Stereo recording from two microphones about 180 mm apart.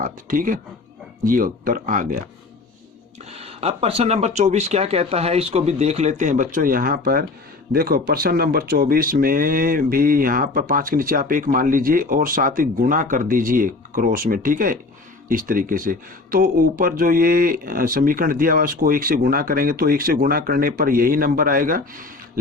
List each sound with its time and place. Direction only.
0.0 s speech: 50° right (ahead or behind)
3.3 s speech: 35° right (ahead or behind); by 22.0 s 50° right (ahead or behind)